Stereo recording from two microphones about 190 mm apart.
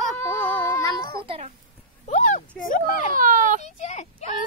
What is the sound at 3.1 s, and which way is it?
Speech, 45° right (ahead or behind).